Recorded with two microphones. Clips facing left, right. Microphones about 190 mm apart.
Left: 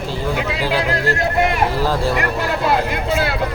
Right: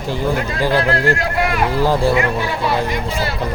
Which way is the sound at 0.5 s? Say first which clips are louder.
Right 3 dB; 10° left (ahead or behind).